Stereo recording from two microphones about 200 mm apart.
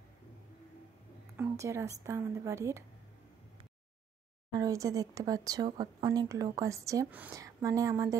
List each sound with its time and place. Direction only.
1.3 s speech: 10° right (ahead or behind)
4.6 s speech: 15° right (ahead or behind)